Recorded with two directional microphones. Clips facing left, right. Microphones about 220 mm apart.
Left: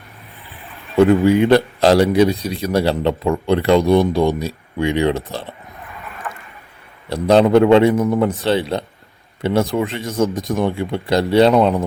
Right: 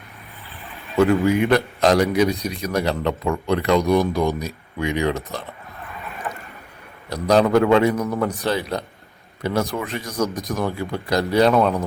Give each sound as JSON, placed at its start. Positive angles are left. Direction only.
{"t": 0.9, "sound": "speech", "side_deg": 30}
{"t": 7.1, "sound": "speech", "side_deg": 30}